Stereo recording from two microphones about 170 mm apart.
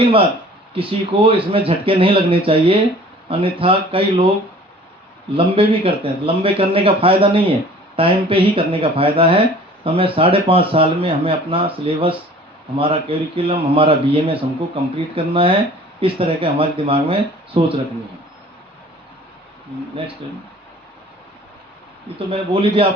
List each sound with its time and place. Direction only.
0.0 s speech: 30° right (ahead or behind)
5.3 s speech: 30° right (ahead or behind)
22.3 s speech: 30° right (ahead or behind)